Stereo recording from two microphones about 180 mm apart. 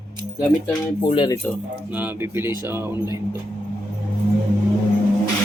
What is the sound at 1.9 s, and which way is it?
Speech, 10° right (ahead or behind).